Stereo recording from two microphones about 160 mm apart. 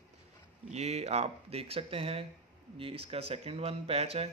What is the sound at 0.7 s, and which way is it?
Speech, 45° right (ahead or behind).